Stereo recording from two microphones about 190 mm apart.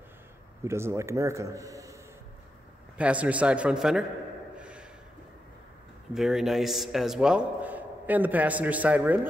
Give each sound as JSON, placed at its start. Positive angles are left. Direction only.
{"t": 0.7, "sound": "a man's voice", "side_deg": -15}
{"t": 3.0, "sound": "a man's voice", "side_deg": -5}
{"t": 4.6, "sound": "a sound", "side_deg": -5}
{"t": 6.1, "sound": "a man's voice", "side_deg": 0}